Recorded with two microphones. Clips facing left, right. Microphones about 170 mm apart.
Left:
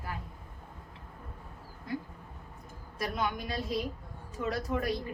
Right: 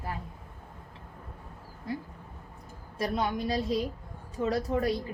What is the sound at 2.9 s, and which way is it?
A woman's voice, 30° right (ahead or behind).